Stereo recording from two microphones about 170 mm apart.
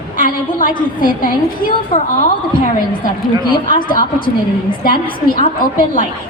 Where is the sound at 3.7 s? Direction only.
55° left (ahead or behind).